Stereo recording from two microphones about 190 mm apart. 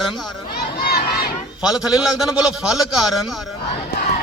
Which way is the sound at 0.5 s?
55° left (ahead or behind).